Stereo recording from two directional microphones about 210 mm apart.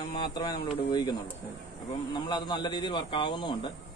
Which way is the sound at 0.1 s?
20° left (ahead or behind).